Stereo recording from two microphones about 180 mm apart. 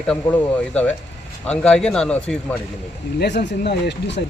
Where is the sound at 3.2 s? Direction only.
65° left (ahead or behind).